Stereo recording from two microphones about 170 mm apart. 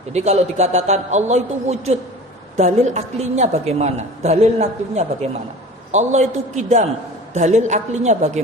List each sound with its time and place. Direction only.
0.1 s a woman's voice: 40° right (ahead or behind)